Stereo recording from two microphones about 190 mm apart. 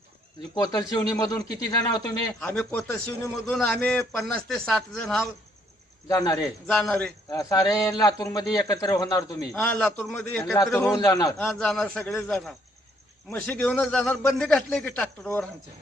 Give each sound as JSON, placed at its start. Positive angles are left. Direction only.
{"t": 0.5, "sound": "speech", "side_deg": 20}
{"t": 2.4, "sound": "a man's voice", "side_deg": 5}
{"t": 6.1, "sound": "speech", "side_deg": 20}
{"t": 6.7, "sound": "a man's voice", "side_deg": 5}
{"t": 7.3, "sound": "speech", "side_deg": 20}
{"t": 9.5, "sound": "a man's voice", "side_deg": 5}
{"t": 10.5, "sound": "a man's voice", "side_deg": 15}
{"t": 11.3, "sound": "a man's voice", "side_deg": 0}